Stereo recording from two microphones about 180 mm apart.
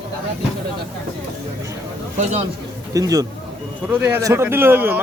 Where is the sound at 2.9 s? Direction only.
20° right (ahead or behind).